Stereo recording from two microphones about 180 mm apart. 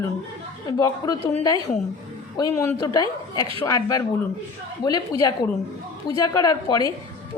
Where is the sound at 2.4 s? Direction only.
20° left (ahead or behind).